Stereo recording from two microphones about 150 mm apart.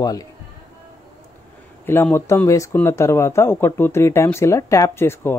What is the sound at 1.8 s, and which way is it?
Speech, 15° left (ahead or behind).